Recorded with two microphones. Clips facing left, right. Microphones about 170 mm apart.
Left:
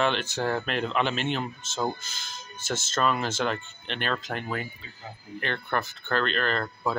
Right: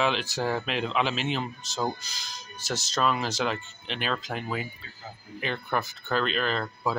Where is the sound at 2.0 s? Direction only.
35° right (ahead or behind).